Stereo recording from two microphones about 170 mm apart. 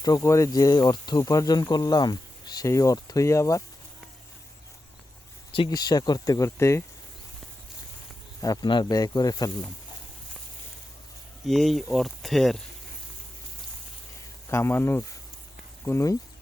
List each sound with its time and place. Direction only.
0.0 s speech: 20° left (ahead or behind)
5.5 s speech: 25° left (ahead or behind)
8.4 s speech: 25° left (ahead or behind)
11.4 s speech: centre (ahead or behind)
14.5 s speech: 15° left (ahead or behind)